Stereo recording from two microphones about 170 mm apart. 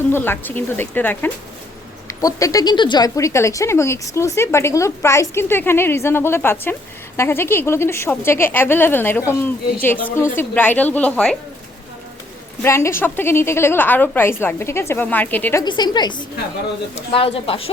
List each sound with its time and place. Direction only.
0.1 s speech: 10° left (ahead or behind)
12.6 s speech: 15° left (ahead or behind)
15.6 s a woman's voice: 25° left (ahead or behind)